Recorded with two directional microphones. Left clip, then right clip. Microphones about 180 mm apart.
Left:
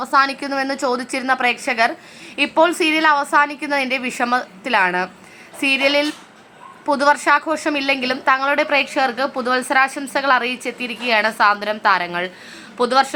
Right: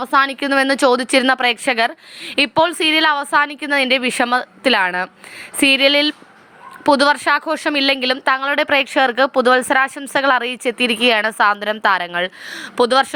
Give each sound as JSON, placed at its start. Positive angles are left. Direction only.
{"t": 0.0, "sound": "speech", "side_deg": -30}
{"t": 0.3, "sound": "a woman's voice", "side_deg": -45}